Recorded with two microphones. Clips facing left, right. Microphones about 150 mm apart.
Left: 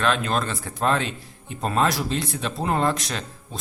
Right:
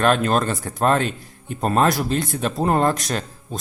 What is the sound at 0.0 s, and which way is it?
A man's voice, 45° right (ahead or behind).